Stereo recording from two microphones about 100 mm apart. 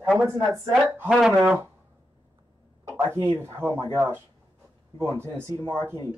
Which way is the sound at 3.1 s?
25° right (ahead or behind).